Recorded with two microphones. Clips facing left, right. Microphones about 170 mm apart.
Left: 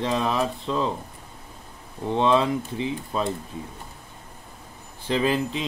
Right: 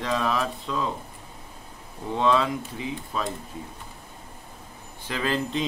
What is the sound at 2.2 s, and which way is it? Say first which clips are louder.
Speech: left 2 dB; 20° left (ahead or behind).